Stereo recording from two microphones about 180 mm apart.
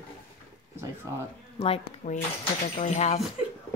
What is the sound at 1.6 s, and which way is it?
Speech, 35° left (ahead or behind).